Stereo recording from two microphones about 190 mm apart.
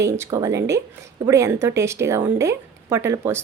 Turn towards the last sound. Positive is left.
turn(degrees=-15)  # may be behind; listen again after turning